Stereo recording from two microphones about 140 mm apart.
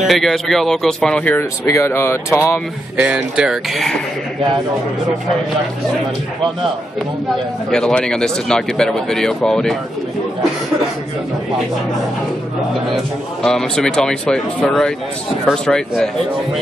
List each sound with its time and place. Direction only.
0.0 s speech: centre (ahead or behind); by 2.6 s 20° left (ahead or behind)
3.0 s speech: 5° right (ahead or behind)
7.7 s speech: 5° left (ahead or behind)
12.9 s speech: 5° left (ahead or behind)